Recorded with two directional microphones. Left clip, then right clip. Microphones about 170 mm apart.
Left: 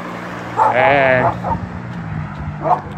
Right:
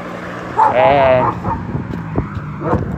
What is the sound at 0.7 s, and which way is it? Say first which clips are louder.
Speech: right 2 dB; centre (ahead or behind).